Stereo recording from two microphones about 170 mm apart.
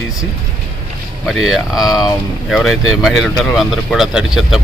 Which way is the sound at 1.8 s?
20° left (ahead or behind).